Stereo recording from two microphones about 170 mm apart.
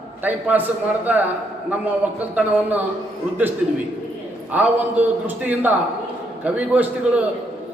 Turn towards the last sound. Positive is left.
turn(degrees=-5)  # may be behind; listen again after turning